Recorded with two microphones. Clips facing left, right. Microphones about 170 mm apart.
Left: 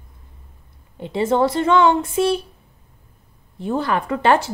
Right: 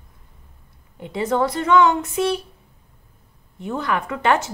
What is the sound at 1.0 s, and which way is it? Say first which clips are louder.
A woman's voice: left 3 dB; 25° left (ahead or behind).